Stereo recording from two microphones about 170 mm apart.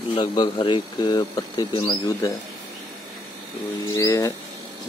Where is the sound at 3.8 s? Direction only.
15° left (ahead or behind).